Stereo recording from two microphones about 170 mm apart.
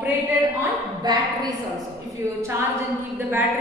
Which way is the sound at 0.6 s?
20° right (ahead or behind).